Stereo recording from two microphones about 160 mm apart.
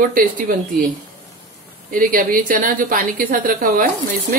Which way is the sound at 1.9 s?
65° right (ahead or behind).